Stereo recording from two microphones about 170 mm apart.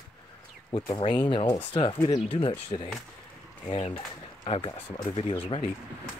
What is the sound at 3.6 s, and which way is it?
Speech, 35° left (ahead or behind).